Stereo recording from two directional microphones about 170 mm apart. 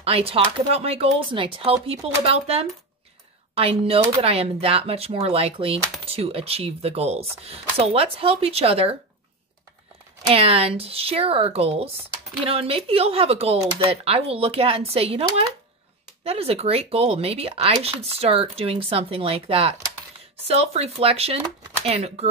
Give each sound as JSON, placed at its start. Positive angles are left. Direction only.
{"t": 0.0, "sound": "speech", "side_deg": -35}
{"t": 10.3, "sound": "speech", "side_deg": -35}